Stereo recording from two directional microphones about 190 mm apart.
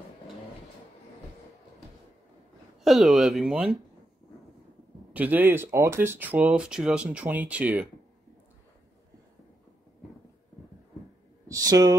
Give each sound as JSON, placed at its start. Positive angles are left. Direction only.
{"t": 2.8, "sound": "speech", "side_deg": 0}
{"t": 5.1, "sound": "speech", "side_deg": -10}
{"t": 11.4, "sound": "a sound", "side_deg": -20}